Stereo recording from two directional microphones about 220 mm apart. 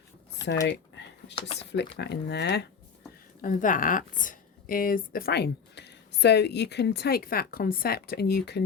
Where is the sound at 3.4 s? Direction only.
35° left (ahead or behind).